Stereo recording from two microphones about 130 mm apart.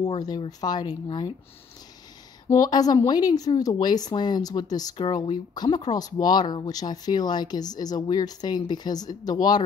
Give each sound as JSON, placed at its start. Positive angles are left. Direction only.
{"t": 0.5, "sound": "speech", "side_deg": 30}
{"t": 2.5, "sound": "a woman's voice", "side_deg": 30}